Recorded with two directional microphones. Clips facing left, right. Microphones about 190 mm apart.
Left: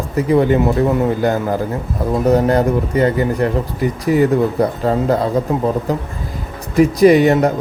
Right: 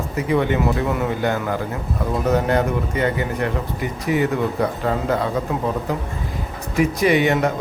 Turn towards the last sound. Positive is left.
turn(degrees=40)  # may be behind; listen again after turning